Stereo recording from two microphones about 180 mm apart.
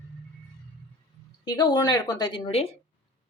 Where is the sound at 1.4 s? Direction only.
20° left (ahead or behind).